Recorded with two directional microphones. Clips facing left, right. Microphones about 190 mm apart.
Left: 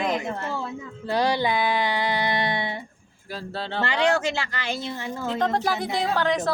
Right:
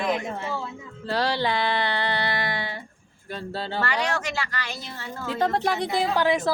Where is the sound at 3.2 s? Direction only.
Centre (ahead or behind).